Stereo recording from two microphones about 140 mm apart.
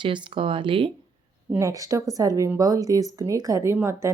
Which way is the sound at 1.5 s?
20° right (ahead or behind).